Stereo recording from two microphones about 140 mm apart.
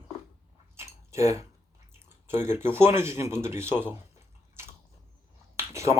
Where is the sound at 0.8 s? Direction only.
20° right (ahead or behind).